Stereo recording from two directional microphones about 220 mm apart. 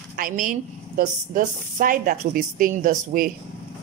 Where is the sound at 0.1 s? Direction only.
40° right (ahead or behind).